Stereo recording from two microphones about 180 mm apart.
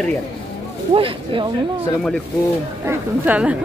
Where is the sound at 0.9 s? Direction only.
30° right (ahead or behind).